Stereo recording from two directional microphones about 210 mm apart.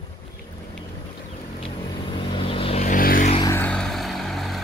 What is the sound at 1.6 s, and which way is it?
Vehicle, 25° left (ahead or behind).